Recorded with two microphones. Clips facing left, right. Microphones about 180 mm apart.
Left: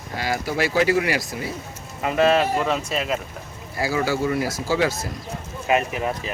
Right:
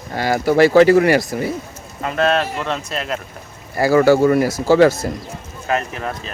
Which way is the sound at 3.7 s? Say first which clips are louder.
Right 10 dB; 60° right (ahead or behind).